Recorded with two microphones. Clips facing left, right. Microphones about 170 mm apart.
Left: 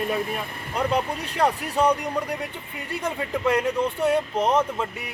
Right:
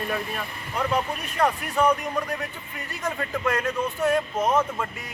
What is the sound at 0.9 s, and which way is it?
Speech, 30° left (ahead or behind).